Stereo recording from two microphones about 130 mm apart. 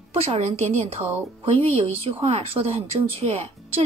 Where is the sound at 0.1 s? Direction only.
50° right (ahead or behind).